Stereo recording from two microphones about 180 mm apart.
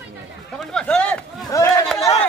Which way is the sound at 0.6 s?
5° left (ahead or behind).